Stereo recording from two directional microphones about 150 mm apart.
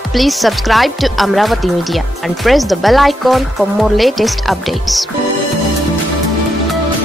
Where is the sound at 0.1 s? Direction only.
Centre (ahead or behind).